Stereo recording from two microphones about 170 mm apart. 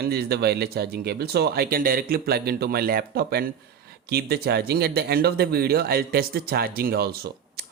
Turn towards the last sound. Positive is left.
turn(degrees=-65)  # may be behind; listen again after turning